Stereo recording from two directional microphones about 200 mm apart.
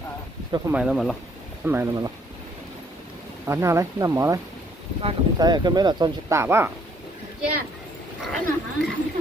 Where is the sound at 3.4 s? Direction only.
15° right (ahead or behind).